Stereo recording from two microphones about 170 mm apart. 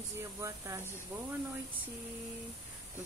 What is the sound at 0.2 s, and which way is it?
Speech, 15° right (ahead or behind).